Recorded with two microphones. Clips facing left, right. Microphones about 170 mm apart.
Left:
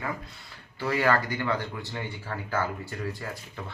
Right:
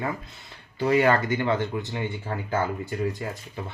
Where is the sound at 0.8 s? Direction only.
20° right (ahead or behind).